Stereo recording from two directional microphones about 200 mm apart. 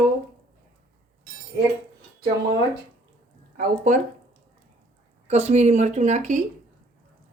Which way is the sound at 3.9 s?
40° right (ahead or behind).